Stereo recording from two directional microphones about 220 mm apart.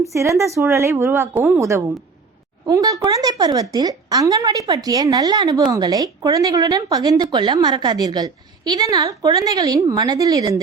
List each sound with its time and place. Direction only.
0.0 s a woman's voice: 15° right (ahead or behind)